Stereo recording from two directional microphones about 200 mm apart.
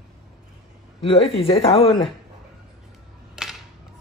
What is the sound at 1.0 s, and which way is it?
Speech, 25° left (ahead or behind).